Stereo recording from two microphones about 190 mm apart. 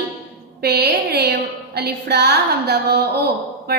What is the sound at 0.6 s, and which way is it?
A woman's voice, 55° right (ahead or behind).